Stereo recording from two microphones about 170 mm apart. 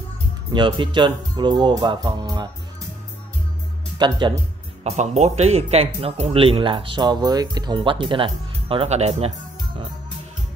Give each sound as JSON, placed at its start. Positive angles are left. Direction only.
{"t": 0.5, "sound": "speech", "side_deg": -30}
{"t": 4.0, "sound": "speech", "side_deg": -25}
{"t": 4.8, "sound": "speech", "side_deg": -40}